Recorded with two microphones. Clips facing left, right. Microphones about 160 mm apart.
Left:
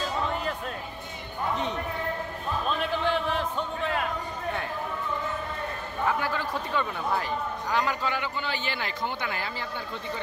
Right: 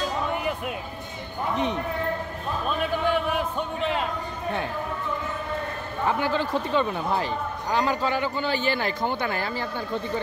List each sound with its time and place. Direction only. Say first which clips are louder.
0.3 s music: right 3 dB; 10° right (ahead or behind)
2.8 s speech: right 5 dB; 10° right (ahead or behind)
6.0 s a man's voice: right 4 dB; 25° right (ahead or behind); by 9.7 s 40° right (ahead or behind)